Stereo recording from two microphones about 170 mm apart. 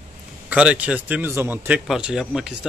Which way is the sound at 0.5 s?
10° right (ahead or behind).